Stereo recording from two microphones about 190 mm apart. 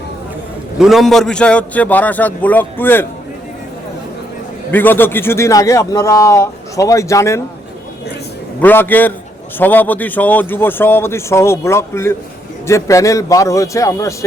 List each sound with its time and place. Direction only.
0.8 s a man's voice: centre (ahead or behind)
4.7 s a man's voice: 10° left (ahead or behind)
8.6 s a man's voice: 10° left (ahead or behind)